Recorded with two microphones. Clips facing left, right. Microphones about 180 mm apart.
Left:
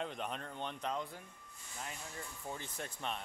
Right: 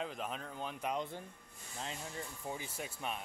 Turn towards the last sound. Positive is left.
turn(degrees=-5)  # may be behind; listen again after turning